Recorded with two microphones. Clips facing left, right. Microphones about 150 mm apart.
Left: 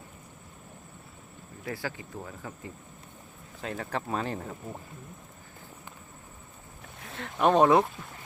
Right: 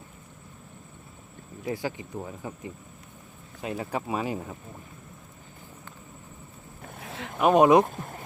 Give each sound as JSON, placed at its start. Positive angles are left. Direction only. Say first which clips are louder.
{"t": 1.6, "sound": "speech", "louder": "right 5 dB", "side_deg": -20}
{"t": 7.0, "sound": "speech", "louder": "right 1 dB", "side_deg": 0}
{"t": 7.9, "sound": "speech", "louder": "right 5 dB", "side_deg": -45}